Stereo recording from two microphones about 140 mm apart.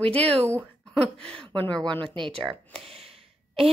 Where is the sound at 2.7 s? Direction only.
45° right (ahead or behind).